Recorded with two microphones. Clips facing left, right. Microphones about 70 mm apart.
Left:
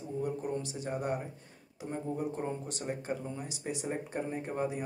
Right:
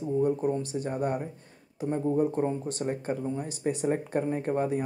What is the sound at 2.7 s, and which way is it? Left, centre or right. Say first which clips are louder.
Speech: right 6 dB; right.